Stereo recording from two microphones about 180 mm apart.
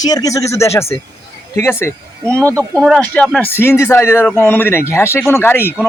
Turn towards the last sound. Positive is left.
turn(degrees=10)  # may be behind; listen again after turning